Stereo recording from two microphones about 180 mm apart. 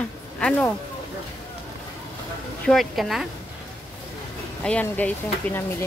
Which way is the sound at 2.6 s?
Centre (ahead or behind).